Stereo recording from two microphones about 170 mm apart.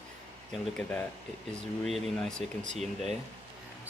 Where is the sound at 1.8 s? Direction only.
Centre (ahead or behind).